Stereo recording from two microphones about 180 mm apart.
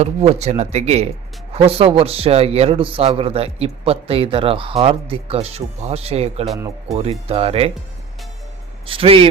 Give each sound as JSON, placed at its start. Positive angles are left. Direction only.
{"t": 0.0, "sound": "a man's voice", "side_deg": -35}
{"t": 8.9, "sound": "a man's voice", "side_deg": -30}